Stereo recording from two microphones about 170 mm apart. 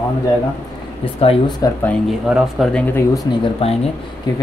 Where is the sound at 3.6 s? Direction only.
35° left (ahead or behind).